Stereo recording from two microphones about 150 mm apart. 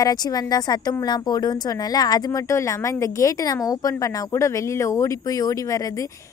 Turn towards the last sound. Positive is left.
turn(degrees=20)  # may be behind; listen again after turning